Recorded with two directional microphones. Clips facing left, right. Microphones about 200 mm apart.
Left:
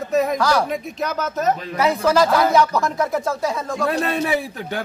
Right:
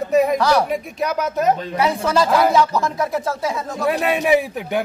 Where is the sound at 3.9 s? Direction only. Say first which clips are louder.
Right 5 dB; 15° right (ahead or behind).